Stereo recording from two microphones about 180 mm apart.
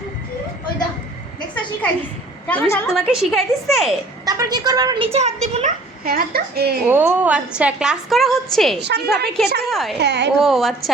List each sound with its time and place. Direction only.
2.5 s a woman's voice: 10° left (ahead or behind)
2.9 s a woman's voice: centre (ahead or behind)
4.3 s a woman's voice: 20° right (ahead or behind)
5.1 s a woman's voice: 35° right (ahead or behind)
6.1 s a woman's voice: 55° right (ahead or behind)
6.8 s a woman's voice: 10° right (ahead or behind)
8.8 s a woman's voice: 65° right (ahead or behind)
9.6 s a woman's voice: centre (ahead or behind)
10.0 s a woman's voice: 70° right (ahead or behind)
10.4 s a woman's voice: centre (ahead or behind)